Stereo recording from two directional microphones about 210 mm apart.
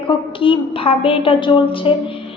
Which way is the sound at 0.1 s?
25° left (ahead or behind).